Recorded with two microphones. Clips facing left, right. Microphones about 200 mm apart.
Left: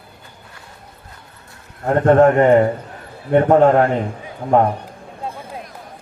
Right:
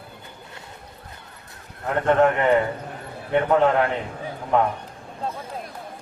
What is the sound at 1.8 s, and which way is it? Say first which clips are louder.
A man's voice: left 7 dB; 45° left (ahead or behind).